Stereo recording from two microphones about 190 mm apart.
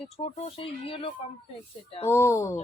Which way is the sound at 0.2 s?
30° left (ahead or behind).